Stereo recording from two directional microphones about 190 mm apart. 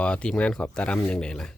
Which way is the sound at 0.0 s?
5° left (ahead or behind).